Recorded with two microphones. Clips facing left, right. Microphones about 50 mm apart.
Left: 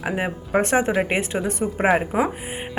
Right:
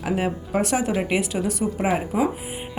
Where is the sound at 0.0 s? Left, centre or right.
Centre.